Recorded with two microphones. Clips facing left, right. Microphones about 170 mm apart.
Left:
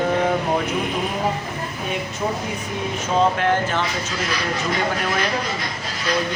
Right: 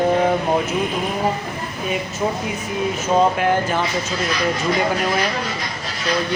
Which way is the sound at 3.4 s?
10° right (ahead or behind).